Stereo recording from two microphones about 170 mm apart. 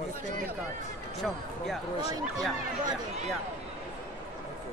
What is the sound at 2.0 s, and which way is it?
Speech, 20° right (ahead or behind).